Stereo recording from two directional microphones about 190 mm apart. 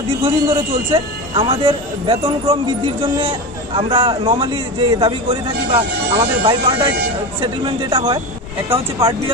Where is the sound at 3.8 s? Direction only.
30° right (ahead or behind).